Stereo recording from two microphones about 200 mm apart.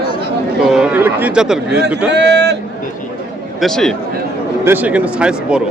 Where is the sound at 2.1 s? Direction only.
60° right (ahead or behind).